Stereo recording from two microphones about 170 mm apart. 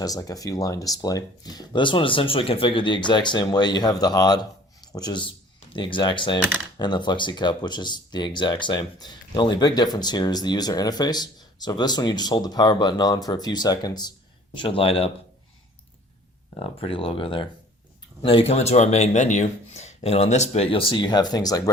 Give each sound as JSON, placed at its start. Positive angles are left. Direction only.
{"t": 0.0, "sound": "speech", "side_deg": 20}
{"t": 16.6, "sound": "speech", "side_deg": 35}